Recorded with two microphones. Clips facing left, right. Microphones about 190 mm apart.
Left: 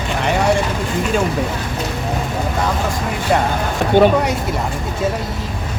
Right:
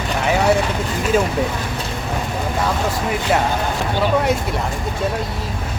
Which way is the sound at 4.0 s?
60° left (ahead or behind).